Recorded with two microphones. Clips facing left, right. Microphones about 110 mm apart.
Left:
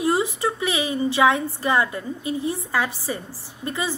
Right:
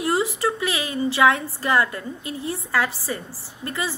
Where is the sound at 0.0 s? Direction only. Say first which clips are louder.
Left 1 dB; 20° left (ahead or behind).